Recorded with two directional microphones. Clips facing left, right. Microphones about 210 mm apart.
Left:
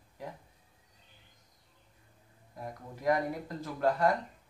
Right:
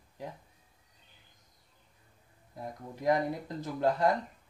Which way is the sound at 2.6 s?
20° right (ahead or behind).